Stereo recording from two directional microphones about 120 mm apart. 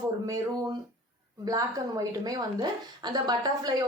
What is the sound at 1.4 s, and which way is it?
A woman's voice, 30° right (ahead or behind).